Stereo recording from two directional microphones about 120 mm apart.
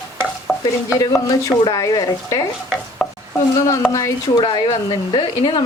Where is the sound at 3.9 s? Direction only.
25° left (ahead or behind).